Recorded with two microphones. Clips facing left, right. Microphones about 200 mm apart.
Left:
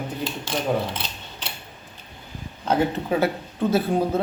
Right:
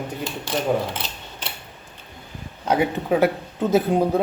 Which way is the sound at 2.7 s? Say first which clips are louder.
Right 2 dB; 10° right (ahead or behind).